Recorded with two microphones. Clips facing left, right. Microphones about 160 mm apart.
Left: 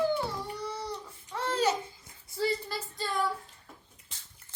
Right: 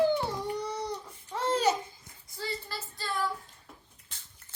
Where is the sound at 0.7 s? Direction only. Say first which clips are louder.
Right 2 dB; 20° right (ahead or behind).